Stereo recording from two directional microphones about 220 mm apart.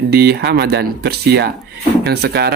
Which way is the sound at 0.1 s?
45° right (ahead or behind).